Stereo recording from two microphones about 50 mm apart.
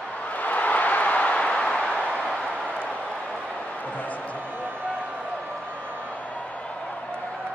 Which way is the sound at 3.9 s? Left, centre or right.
Left.